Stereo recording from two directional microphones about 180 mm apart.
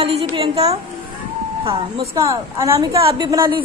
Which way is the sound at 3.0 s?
30° right (ahead or behind).